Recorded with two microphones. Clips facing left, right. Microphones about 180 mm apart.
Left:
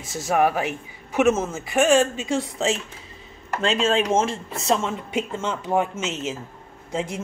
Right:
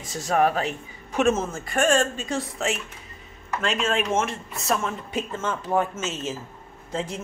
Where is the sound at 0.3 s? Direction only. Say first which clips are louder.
Left 1 dB; 10° left (ahead or behind).